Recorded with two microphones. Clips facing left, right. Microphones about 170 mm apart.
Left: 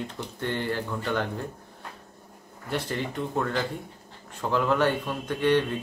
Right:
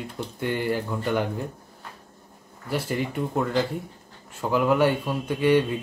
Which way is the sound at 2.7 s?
10° right (ahead or behind).